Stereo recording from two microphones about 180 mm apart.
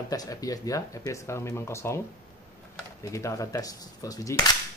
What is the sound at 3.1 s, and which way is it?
Speech, 15° left (ahead or behind).